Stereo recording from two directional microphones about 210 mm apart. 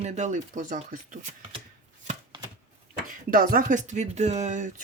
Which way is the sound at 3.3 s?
40° right (ahead or behind).